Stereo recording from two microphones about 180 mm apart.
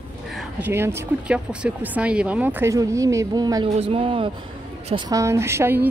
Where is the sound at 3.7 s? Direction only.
30° right (ahead or behind).